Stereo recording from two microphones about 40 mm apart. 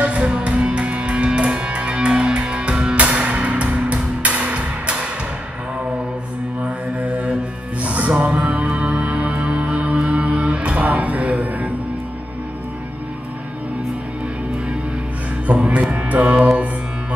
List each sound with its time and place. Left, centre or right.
0.0 s music: right
6.6 s mantra: right
7.8 s music: right
15.4 s music: right